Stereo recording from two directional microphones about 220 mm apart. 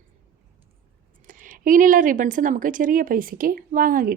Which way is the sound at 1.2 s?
35° right (ahead or behind).